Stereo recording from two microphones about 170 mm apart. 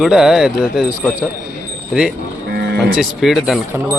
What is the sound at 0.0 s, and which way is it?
Speech, 5° right (ahead or behind).